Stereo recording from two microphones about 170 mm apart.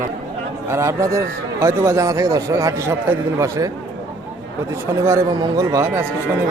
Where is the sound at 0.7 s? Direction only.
15° right (ahead or behind).